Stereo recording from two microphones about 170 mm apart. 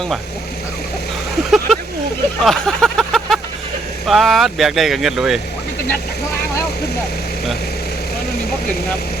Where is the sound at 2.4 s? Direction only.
5° left (ahead or behind).